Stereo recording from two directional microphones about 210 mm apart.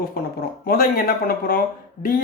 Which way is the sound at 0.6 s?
45° left (ahead or behind).